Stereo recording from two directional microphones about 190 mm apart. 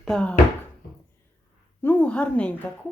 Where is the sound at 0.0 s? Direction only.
5° left (ahead or behind).